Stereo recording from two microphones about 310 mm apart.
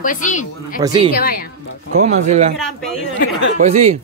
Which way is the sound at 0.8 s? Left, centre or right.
Centre.